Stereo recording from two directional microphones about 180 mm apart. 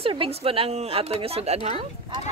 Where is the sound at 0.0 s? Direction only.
30° right (ahead or behind).